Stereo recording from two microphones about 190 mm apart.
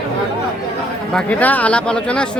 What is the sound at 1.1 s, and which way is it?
Speech, 10° left (ahead or behind).